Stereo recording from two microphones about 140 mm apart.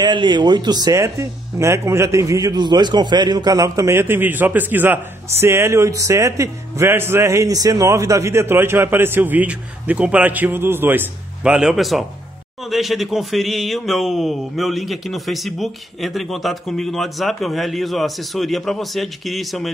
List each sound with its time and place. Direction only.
0.0 s a man's voice: 35° right (ahead or behind); by 19.7 s centre (ahead or behind)